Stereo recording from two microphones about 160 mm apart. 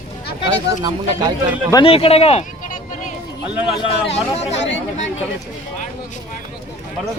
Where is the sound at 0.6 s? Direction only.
25° right (ahead or behind).